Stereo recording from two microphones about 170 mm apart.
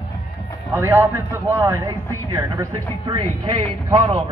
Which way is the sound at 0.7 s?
10° right (ahead or behind).